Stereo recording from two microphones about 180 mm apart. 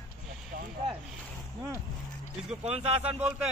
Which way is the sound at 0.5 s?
50° right (ahead or behind).